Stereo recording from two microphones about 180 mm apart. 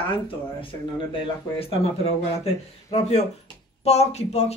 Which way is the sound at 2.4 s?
35° left (ahead or behind).